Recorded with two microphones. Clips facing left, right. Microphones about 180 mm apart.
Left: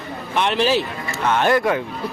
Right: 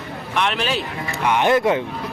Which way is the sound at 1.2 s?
15° right (ahead or behind).